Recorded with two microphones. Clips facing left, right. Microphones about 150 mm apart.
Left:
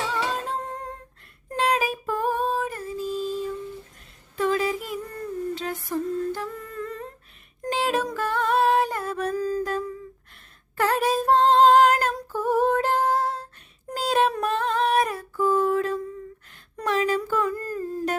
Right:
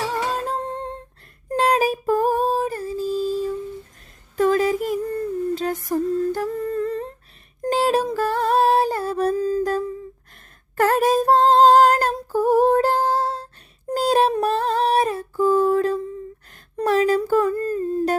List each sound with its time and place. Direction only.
0.1 s humming: 40° right (ahead or behind)
1.5 s female singing: 40° right (ahead or behind)
4.4 s a sound: 45° right (ahead or behind)
5.5 s humming: 40° right (ahead or behind)
7.6 s a sound: 40° right (ahead or behind)
8.1 s music: 35° right (ahead or behind)
10.8 s female singing: 45° right (ahead or behind)
13.9 s child singing: 40° right (ahead or behind)
14.4 s a sound: 35° right (ahead or behind)
17.6 s humming: 25° right (ahead or behind)